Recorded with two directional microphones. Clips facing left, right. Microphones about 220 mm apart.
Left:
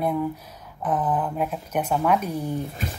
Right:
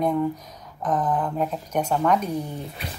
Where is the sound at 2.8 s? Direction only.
45° left (ahead or behind).